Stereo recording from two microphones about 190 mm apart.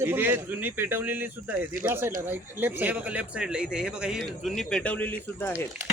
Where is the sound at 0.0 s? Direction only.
10° right (ahead or behind).